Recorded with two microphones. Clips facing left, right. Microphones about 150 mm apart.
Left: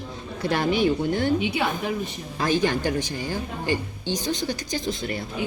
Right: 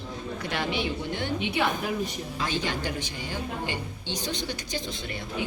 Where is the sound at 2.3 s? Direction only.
45° left (ahead or behind).